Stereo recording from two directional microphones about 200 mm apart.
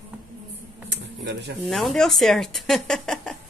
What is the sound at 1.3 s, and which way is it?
Speech, 60° right (ahead or behind).